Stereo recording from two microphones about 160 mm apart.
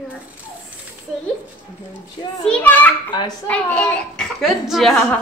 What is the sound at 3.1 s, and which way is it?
Speech, 30° left (ahead or behind).